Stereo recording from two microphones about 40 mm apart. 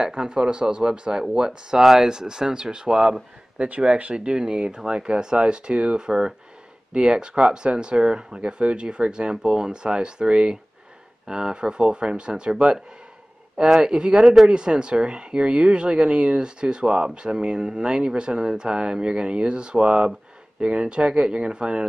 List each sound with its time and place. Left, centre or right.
0.0 s speech: centre
3.5 s speech: right
4.1 s speech: right
14.2 s speech: centre
14.5 s speech: right